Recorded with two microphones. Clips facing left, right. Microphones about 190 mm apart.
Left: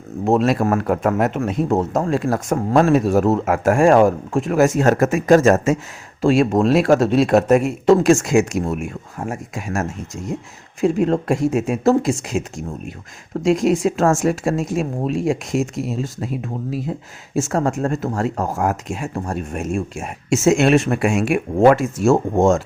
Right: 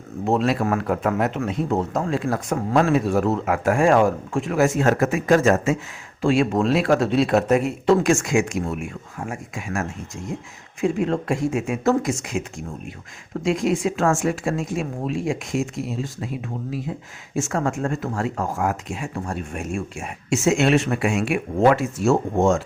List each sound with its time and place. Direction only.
0.3 s speech: 45° left (ahead or behind)
17.3 s speech: 35° left (ahead or behind)